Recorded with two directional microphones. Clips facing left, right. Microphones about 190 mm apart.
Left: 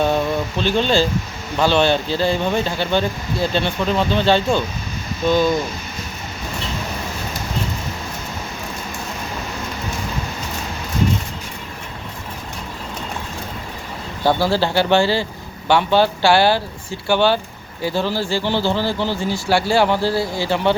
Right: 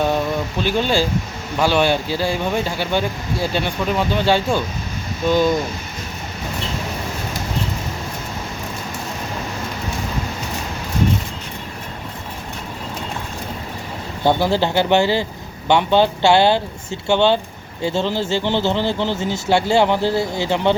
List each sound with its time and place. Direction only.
0.6 s speech: 10° right (ahead or behind)
14.3 s speech: 20° right (ahead or behind)